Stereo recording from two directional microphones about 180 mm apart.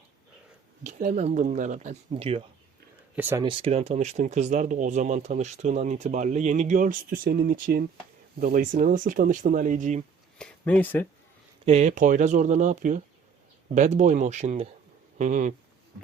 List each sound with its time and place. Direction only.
0.9 s speech: 45° right (ahead or behind)
3.2 s speech: 10° right (ahead or behind)
3.4 s speech: 30° right (ahead or behind)
10.3 s speech: 5° left (ahead or behind)
11.6 s speech: 35° right (ahead or behind)